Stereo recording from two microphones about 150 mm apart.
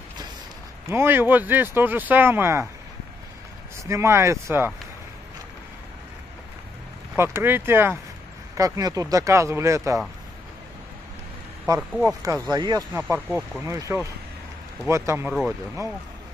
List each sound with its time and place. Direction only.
0.8 s speech: 15° right (ahead or behind)
3.7 s speech: 20° right (ahead or behind)
7.2 s speech: 15° right (ahead or behind)
11.6 s speech: 25° right (ahead or behind)
12.9 s speech: 15° right (ahead or behind)